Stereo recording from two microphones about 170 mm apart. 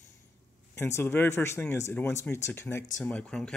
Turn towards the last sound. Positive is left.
turn(degrees=5)  # may be behind; listen again after turning